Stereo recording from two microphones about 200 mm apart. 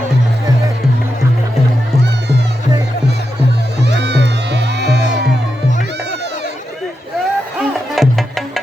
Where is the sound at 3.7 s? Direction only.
60° right (ahead or behind).